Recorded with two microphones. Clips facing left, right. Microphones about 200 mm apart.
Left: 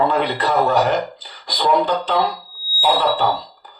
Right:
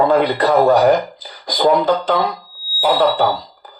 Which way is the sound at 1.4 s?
45° right (ahead or behind).